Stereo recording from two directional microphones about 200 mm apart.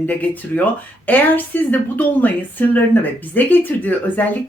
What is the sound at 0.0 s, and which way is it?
Speech, 10° left (ahead or behind).